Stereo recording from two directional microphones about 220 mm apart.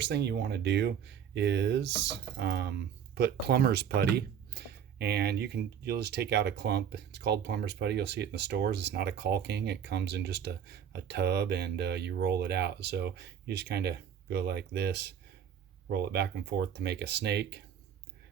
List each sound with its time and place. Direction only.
0.0 s speech: 50° right (ahead or behind)